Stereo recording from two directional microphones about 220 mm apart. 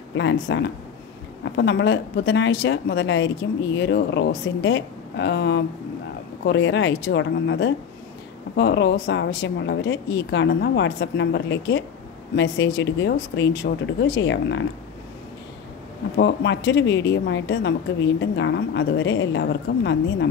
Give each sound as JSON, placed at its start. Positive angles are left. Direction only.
{"t": 0.1, "sound": "speech", "side_deg": 55}
{"t": 16.2, "sound": "speech", "side_deg": 55}